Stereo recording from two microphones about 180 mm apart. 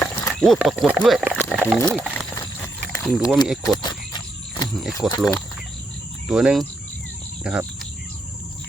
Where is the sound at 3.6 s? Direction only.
25° left (ahead or behind).